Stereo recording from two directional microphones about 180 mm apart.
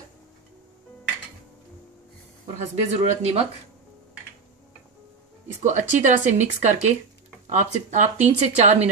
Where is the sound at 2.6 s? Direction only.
35° right (ahead or behind).